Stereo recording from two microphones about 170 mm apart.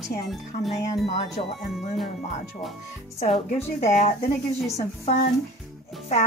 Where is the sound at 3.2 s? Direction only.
35° left (ahead or behind).